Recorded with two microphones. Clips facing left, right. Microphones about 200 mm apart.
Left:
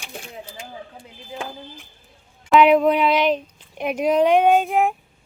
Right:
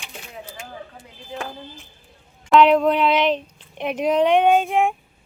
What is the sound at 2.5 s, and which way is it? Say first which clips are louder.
Speech: even; 5° left (ahead or behind).